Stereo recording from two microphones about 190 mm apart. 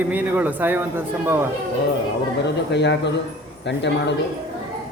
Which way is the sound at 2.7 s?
65° left (ahead or behind).